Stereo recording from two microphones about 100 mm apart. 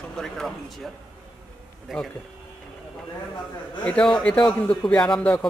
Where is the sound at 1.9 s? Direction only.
Centre (ahead or behind).